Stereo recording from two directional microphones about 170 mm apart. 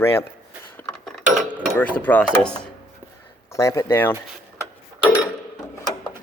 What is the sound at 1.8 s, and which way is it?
Speech, 10° left (ahead or behind).